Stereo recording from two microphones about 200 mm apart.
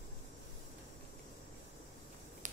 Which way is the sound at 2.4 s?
40° right (ahead or behind).